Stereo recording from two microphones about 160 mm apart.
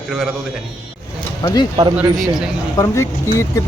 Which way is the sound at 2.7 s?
20° left (ahead or behind).